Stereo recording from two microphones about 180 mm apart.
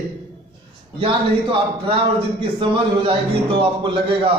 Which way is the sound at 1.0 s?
30° right (ahead or behind).